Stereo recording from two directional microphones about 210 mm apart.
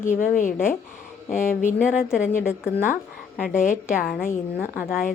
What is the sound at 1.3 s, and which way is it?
Speech, 40° left (ahead or behind).